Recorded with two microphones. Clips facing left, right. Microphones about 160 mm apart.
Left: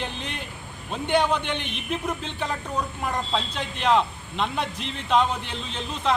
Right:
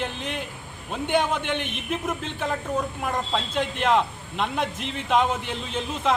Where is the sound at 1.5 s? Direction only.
50° right (ahead or behind).